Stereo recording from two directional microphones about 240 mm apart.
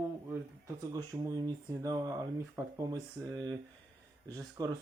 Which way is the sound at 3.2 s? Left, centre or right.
Centre.